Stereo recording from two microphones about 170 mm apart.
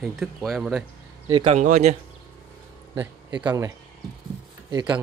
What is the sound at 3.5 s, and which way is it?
Speech, 20° right (ahead or behind).